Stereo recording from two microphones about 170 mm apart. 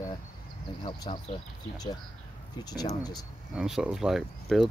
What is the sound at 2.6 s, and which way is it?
Speech, 25° left (ahead or behind).